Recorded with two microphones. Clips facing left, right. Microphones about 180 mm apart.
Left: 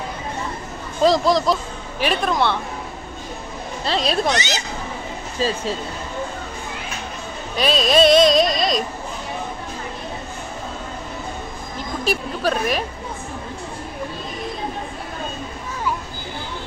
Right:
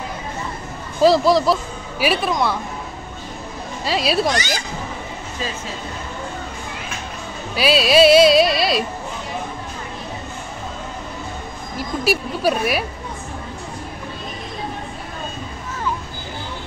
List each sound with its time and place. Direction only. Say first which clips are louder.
1.0 s speech: right 2 dB; 5° right (ahead or behind)
3.8 s speech: right 2 dB; 10° right (ahead or behind)
4.3 s speech: even; 20° left (ahead or behind)
7.5 s speech: right 2 dB; 5° right (ahead or behind)
12.0 s speech: right 2 dB; 10° right (ahead or behind)